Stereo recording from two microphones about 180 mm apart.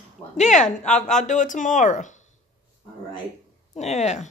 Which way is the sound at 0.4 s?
40° left (ahead or behind).